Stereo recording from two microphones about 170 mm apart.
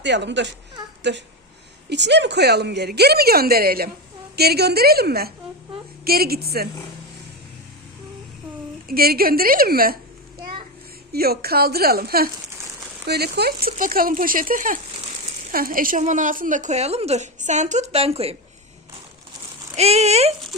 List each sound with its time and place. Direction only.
0.0 s a woman's voice: 90° right; by 6.7 s 65° right (ahead or behind)
8.9 s speech: 60° right (ahead or behind)
11.1 s a woman's voice: 65° right (ahead or behind); by 18.3 s 35° right (ahead or behind)
19.7 s speech: 40° right (ahead or behind)